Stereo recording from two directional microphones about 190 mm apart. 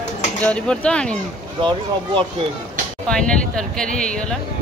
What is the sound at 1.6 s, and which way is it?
Speech, 25° right (ahead or behind).